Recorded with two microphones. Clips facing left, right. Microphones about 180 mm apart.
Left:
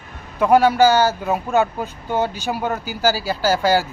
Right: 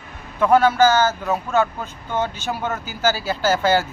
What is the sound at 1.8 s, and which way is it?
Speech, 40° left (ahead or behind).